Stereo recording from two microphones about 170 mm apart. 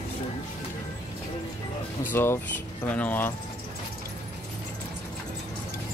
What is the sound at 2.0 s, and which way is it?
Speech, 15° left (ahead or behind).